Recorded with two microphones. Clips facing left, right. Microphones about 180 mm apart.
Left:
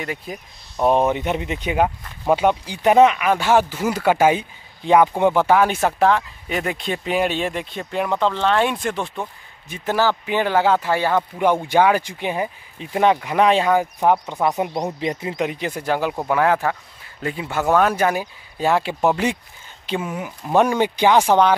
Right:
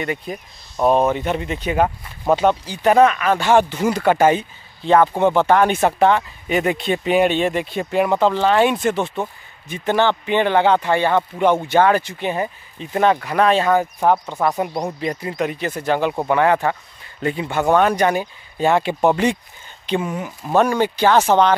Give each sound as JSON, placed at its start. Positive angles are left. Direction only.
{"t": 0.0, "sound": "speech", "side_deg": 0}
{"t": 0.7, "sound": "speech", "side_deg": 15}